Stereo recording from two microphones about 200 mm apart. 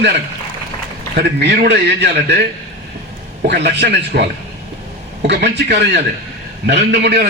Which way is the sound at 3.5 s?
55° right (ahead or behind).